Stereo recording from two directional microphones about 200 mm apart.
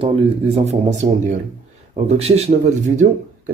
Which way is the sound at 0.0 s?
30° right (ahead or behind).